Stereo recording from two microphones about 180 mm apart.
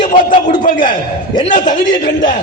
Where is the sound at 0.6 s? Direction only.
50° left (ahead or behind).